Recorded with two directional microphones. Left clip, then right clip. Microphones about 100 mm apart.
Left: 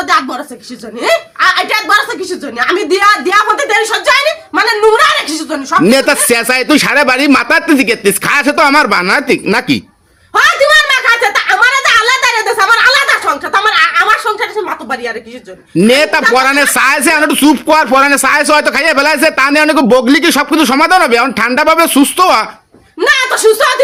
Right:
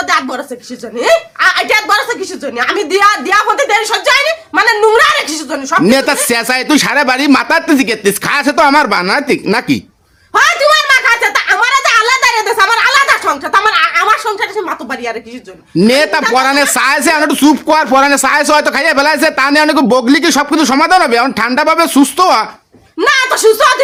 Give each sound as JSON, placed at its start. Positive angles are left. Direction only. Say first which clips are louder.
{"t": 0.0, "sound": "a sound", "louder": "left 1 dB", "side_deg": -35}
{"t": 0.9, "sound": "a woman's voice", "louder": "right 1 dB", "side_deg": -40}
{"t": 2.6, "sound": "a woman's voice", "louder": "even", "side_deg": -30}
{"t": 5.9, "sound": "speech", "louder": "left 2 dB", "side_deg": -10}
{"t": 10.3, "sound": "a sound", "louder": "left 1 dB", "side_deg": -30}
{"t": 15.9, "sound": "speech", "louder": "left 2 dB", "side_deg": -20}
{"t": 23.0, "sound": "a woman's voice", "louder": "even", "side_deg": -30}